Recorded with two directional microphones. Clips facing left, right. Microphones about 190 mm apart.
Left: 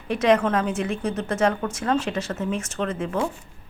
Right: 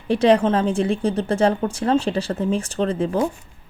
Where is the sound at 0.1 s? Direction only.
30° right (ahead or behind).